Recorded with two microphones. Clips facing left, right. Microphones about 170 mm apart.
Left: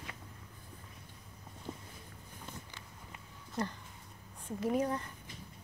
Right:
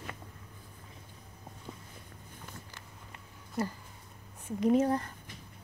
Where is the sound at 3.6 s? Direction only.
5° right (ahead or behind).